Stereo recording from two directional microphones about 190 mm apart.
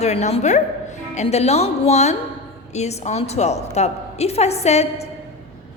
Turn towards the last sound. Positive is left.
turn(degrees=35)  # may be behind; listen again after turning